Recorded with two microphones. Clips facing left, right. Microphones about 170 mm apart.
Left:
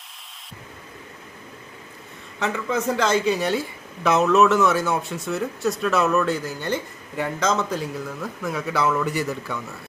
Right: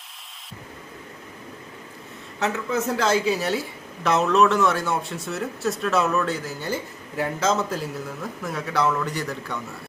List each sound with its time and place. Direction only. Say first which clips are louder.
2.4 s a man's voice: even; 5° right (ahead or behind)